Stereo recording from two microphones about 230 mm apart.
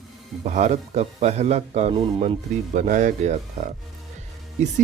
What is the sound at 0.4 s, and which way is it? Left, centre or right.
A man's voice, right.